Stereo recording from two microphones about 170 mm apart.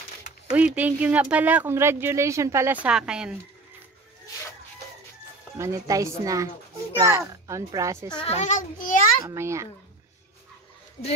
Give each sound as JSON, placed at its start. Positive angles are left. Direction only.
{"t": 0.5, "sound": "speech", "side_deg": -5}
{"t": 5.6, "sound": "a woman's voice", "side_deg": -20}
{"t": 8.1, "sound": "a child's voice", "side_deg": 30}
{"t": 8.4, "sound": "a child's voice", "side_deg": 45}
{"t": 9.2, "sound": "speech", "side_deg": -15}